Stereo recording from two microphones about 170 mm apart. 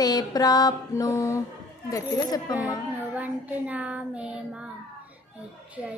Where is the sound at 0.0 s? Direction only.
25° left (ahead or behind).